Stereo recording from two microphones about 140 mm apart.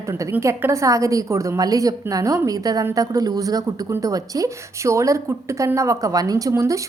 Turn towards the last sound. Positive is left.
turn(degrees=-20)  # may be behind; listen again after turning